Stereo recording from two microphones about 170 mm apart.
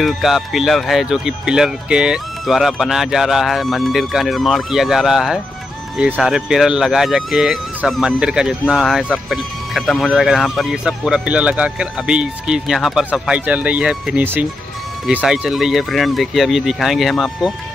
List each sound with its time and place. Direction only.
0.0 s speech: centre (ahead or behind)